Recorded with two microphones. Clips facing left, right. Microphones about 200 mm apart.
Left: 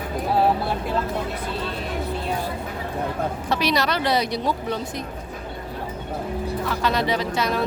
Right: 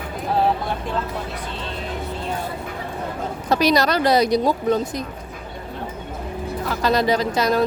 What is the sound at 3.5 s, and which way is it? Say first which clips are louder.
Speech: right 6 dB; 40° right (ahead or behind).